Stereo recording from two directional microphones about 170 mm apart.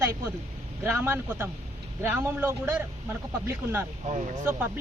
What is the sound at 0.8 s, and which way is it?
A woman's voice, 15° right (ahead or behind).